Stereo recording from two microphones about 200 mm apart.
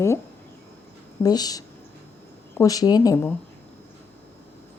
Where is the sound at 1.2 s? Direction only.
20° left (ahead or behind).